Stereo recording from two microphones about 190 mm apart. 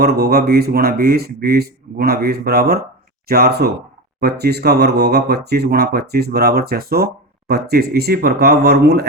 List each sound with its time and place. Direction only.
0.0 s speech: 60° right (ahead or behind)